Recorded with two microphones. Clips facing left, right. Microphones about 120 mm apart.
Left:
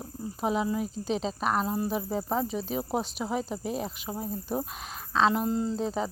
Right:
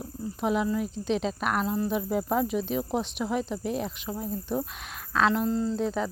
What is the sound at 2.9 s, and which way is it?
Speech, 40° left (ahead or behind).